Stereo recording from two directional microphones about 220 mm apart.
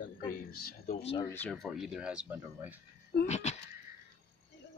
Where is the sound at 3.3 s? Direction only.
30° left (ahead or behind).